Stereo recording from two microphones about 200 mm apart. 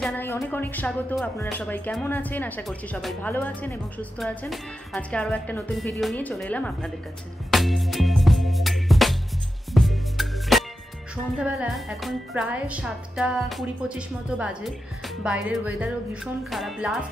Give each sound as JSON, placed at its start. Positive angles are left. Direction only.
{"t": 0.0, "sound": "speech", "side_deg": 10}
{"t": 7.5, "sound": "music", "side_deg": 0}
{"t": 11.3, "sound": "a woman's voice", "side_deg": -5}